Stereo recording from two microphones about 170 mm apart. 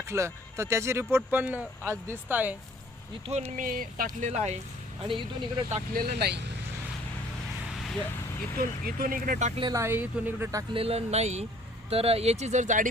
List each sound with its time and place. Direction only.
0.0 s speech: 15° right (ahead or behind)
3.5 s speech: 55° right (ahead or behind)
5.0 s speech: 30° right (ahead or behind)
5.7 s speech: 60° right (ahead or behind)
8.5 s speech: 60° right (ahead or behind)
9.7 s speech: 15° right (ahead or behind)
10.8 s speech: 35° right (ahead or behind)